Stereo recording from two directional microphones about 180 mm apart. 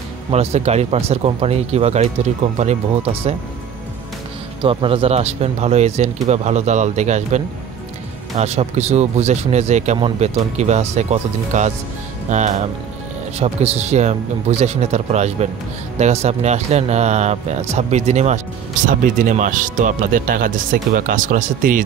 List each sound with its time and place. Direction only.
0.3 s speech: 35° right (ahead or behind)
4.6 s speech: 30° right (ahead or behind); by 21.8 s 50° right (ahead or behind)